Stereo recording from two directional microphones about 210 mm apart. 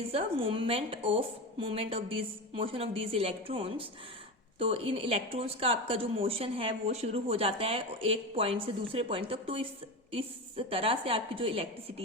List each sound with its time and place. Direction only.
0.0 s speech: 30° right (ahead or behind)